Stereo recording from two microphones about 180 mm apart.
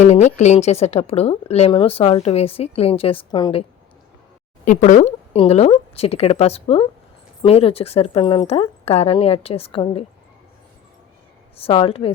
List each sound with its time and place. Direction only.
0.0 s speech: 40° left (ahead or behind)
4.6 s speech: 45° left (ahead or behind)
11.5 s speech: 30° left (ahead or behind)